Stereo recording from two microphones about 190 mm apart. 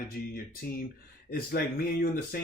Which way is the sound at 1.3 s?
50° left (ahead or behind).